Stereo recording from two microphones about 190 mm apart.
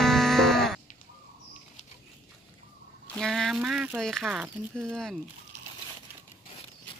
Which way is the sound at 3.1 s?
5° left (ahead or behind).